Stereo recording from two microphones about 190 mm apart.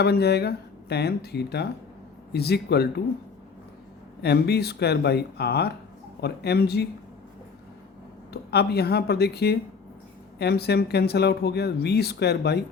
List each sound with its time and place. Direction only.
0.0 s speech: 60° left (ahead or behind)
4.2 s speech: 60° left (ahead or behind)
8.3 s speech: 60° left (ahead or behind)